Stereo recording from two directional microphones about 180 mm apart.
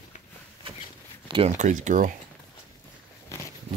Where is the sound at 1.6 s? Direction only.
45° right (ahead or behind).